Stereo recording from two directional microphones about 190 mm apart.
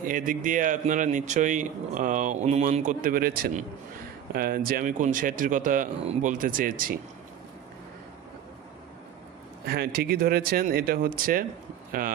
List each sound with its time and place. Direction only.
0.0 s speech: 45° right (ahead or behind)
9.7 s speech: 55° right (ahead or behind)